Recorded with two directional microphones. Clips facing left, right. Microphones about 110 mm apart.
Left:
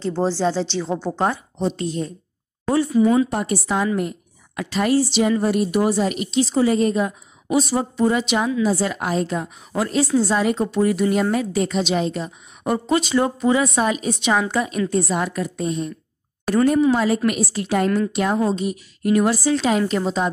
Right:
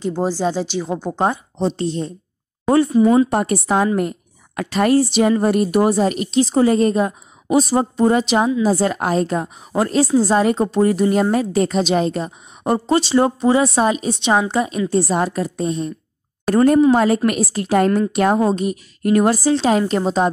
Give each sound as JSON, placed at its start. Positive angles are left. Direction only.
{"t": 0.0, "sound": "speech", "side_deg": -15}
{"t": 1.8, "sound": "speech", "side_deg": -30}
{"t": 3.3, "sound": "a woman's voice", "side_deg": -50}
{"t": 16.4, "sound": "a woman's voice", "side_deg": -45}
{"t": 19.5, "sound": "speech", "side_deg": -35}